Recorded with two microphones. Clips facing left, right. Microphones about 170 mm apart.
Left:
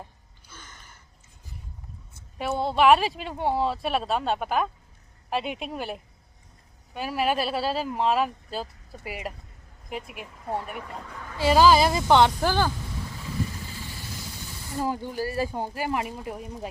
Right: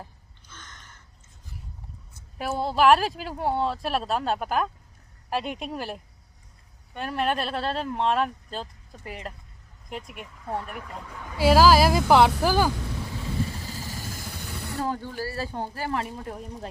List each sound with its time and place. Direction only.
0.4 s gasp: 10° left (ahead or behind)
2.4 s speech: centre (ahead or behind)
13.8 s vehicle: 45° right (ahead or behind)
14.3 s a sound: 60° right (ahead or behind)
14.8 s speech: 15° left (ahead or behind)